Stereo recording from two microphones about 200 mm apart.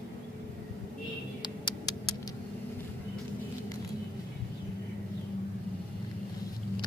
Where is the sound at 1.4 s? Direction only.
20° left (ahead or behind).